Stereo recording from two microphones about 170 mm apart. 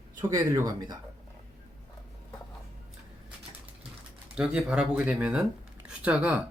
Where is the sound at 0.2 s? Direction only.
20° right (ahead or behind).